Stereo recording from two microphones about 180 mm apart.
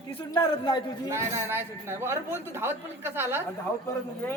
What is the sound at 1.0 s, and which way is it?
A woman's voice, 15° right (ahead or behind).